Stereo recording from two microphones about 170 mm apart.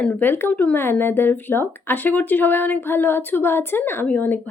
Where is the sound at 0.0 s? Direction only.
10° left (ahead or behind).